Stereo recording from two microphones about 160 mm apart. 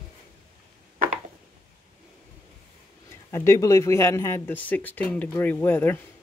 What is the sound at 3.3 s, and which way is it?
Speech, 15° left (ahead or behind).